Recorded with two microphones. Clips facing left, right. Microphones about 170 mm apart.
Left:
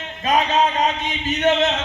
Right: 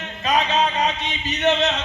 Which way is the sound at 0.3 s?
45° left (ahead or behind).